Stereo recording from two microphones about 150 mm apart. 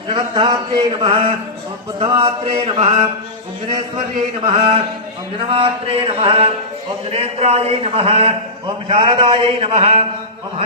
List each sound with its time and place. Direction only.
0.1 s a man's voice: 35° right (ahead or behind)
4.4 s a man's voice: 35° right (ahead or behind)